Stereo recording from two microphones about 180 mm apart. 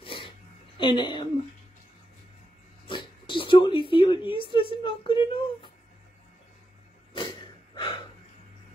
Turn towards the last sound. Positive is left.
turn(degrees=25)  # may be behind; listen again after turning